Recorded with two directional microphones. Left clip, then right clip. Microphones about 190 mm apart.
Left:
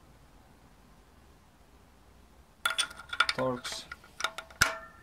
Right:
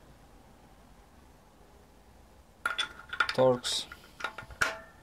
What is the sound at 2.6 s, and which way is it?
Mechanisms, 20° left (ahead or behind).